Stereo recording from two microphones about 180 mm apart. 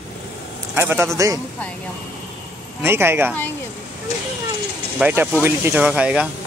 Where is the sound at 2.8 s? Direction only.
15° right (ahead or behind).